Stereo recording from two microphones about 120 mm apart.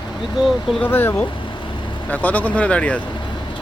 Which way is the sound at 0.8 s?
20° left (ahead or behind).